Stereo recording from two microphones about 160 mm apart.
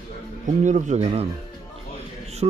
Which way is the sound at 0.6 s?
45° right (ahead or behind).